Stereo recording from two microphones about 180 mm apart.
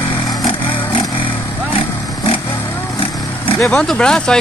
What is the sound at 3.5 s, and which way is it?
Speech, 15° left (ahead or behind).